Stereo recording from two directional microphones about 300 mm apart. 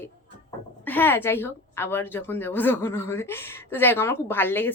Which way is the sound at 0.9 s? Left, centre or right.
Centre.